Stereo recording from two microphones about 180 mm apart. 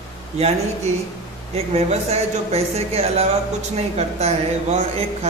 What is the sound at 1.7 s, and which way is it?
Speech, 35° right (ahead or behind).